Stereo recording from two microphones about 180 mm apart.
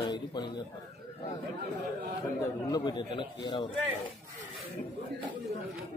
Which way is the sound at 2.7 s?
25° left (ahead or behind).